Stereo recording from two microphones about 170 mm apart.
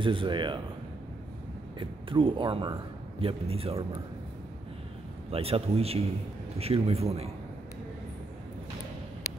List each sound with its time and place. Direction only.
0.0 s a man's voice: 30° right (ahead or behind)
1.8 s a man's voice: 30° right (ahead or behind)
5.3 s a man's voice: 35° right (ahead or behind)